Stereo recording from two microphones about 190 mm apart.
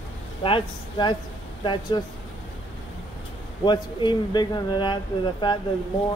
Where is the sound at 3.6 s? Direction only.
25° left (ahead or behind).